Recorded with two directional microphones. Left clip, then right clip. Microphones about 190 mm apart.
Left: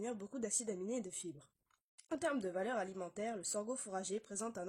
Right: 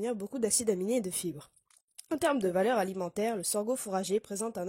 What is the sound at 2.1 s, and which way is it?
Speech, 45° right (ahead or behind).